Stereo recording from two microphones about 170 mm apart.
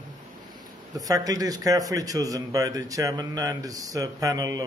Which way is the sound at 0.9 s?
20° right (ahead or behind).